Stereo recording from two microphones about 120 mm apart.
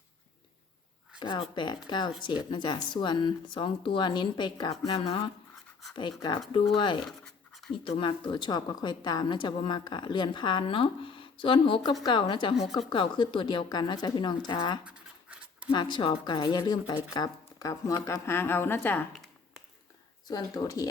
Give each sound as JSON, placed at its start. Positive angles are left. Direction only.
{"t": 1.2, "sound": "speech", "side_deg": 40}
{"t": 5.9, "sound": "a woman's voice", "side_deg": 40}
{"t": 7.0, "sound": "scratch", "side_deg": 0}
{"t": 7.9, "sound": "a woman's voice", "side_deg": 45}
{"t": 14.8, "sound": "scratch", "side_deg": -10}
{"t": 15.7, "sound": "speech", "side_deg": 40}
{"t": 19.1, "sound": "a sound", "side_deg": 0}
{"t": 20.2, "sound": "speech", "side_deg": 35}